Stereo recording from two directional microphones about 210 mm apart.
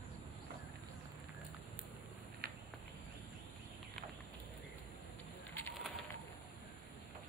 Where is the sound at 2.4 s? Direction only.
50° right (ahead or behind).